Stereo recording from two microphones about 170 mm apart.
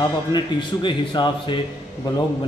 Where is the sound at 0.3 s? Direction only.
25° left (ahead or behind).